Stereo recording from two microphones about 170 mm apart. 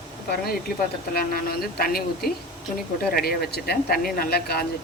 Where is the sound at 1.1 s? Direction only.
60° left (ahead or behind).